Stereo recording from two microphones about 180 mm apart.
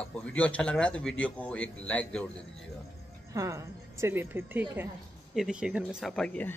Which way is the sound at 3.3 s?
15° right (ahead or behind).